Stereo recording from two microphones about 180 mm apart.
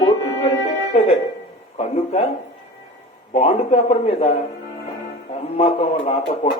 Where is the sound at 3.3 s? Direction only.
35° left (ahead or behind).